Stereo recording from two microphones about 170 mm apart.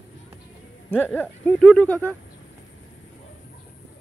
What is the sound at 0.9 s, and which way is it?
Speech, 10° left (ahead or behind).